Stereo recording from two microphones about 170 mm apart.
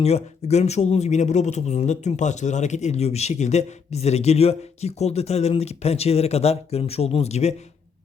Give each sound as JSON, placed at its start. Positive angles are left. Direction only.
{"t": 0.0, "sound": "speech", "side_deg": 40}